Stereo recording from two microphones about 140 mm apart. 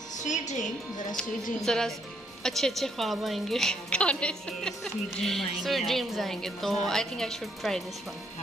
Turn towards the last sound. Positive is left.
turn(degrees=0)  # may be behind; listen again after turning